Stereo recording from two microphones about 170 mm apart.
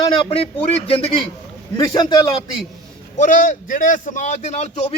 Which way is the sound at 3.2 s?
50° left (ahead or behind).